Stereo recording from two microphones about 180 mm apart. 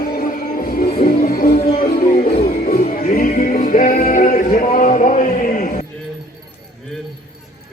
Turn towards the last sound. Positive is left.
turn(degrees=45)  # may be behind; listen again after turning